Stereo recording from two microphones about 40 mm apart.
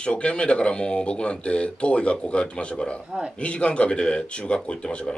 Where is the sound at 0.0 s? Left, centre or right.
Left.